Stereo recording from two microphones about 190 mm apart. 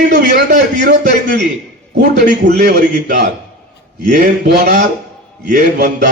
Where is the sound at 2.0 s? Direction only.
45° right (ahead or behind).